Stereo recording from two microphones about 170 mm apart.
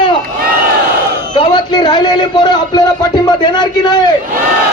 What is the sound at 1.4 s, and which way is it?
A man's voice, 25° left (ahead or behind).